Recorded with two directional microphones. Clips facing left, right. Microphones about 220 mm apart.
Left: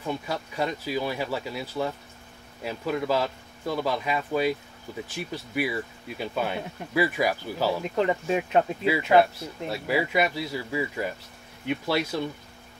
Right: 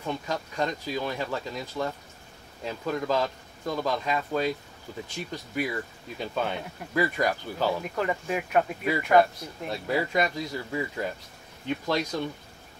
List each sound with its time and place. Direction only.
0.0 s speech: 10° left (ahead or behind)
7.9 s speech: 25° left (ahead or behind)
8.8 s speech: 10° left (ahead or behind)